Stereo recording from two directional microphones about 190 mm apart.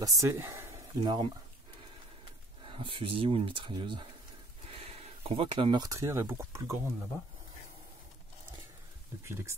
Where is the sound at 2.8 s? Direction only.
25° right (ahead or behind).